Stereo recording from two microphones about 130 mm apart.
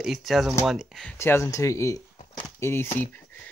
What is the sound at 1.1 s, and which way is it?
Speech, 20° left (ahead or behind).